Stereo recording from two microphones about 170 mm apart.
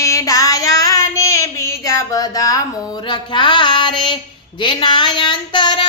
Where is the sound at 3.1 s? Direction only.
30° left (ahead or behind).